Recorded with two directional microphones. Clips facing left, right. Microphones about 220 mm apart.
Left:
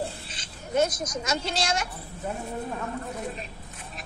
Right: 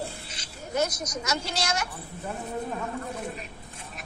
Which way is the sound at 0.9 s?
50° left (ahead or behind).